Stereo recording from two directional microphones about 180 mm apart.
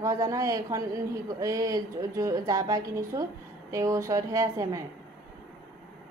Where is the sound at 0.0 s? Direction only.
20° right (ahead or behind).